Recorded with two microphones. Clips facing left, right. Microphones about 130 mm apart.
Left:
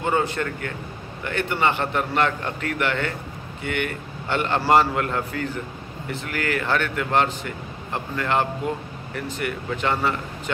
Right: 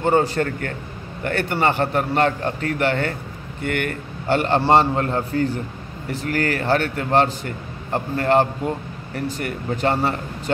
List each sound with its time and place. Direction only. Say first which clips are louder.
0.0 s a man's voice: right 5 dB; 35° right (ahead or behind)
4.6 s a man's voice: right 1 dB; 30° right (ahead or behind)